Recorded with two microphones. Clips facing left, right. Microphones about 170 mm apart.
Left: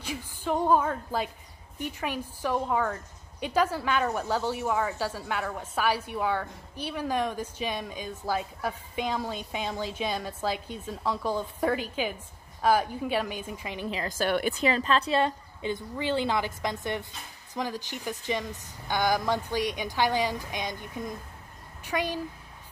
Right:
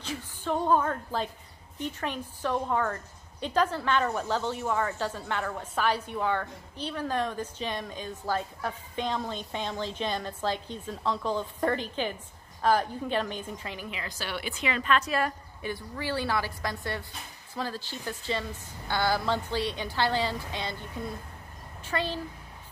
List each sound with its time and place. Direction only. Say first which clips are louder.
0.0 s a woman's voice: left 1 dB; 10° left (ahead or behind)
13.7 s a woman's voice: left 7 dB; 35° left (ahead or behind); by 22.2 s 15° left (ahead or behind)